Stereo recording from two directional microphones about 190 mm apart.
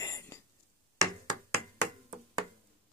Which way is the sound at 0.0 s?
15° left (ahead or behind).